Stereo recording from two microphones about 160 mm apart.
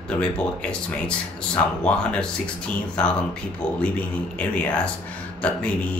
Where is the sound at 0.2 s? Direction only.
5° left (ahead or behind).